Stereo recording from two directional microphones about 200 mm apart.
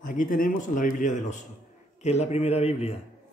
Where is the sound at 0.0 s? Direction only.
40° left (ahead or behind).